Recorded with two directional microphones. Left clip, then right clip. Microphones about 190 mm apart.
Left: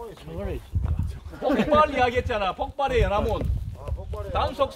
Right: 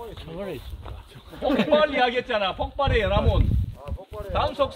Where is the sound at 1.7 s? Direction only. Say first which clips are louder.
Even; 45° left (ahead or behind).